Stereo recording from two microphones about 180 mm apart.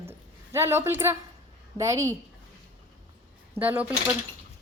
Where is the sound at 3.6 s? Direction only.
10° right (ahead or behind).